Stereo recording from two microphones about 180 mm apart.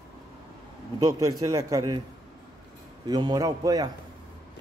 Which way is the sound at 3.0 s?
20° right (ahead or behind).